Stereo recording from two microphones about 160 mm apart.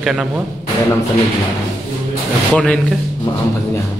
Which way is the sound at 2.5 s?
5° left (ahead or behind).